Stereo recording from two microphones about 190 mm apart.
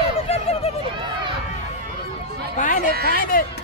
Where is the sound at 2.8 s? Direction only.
55° right (ahead or behind).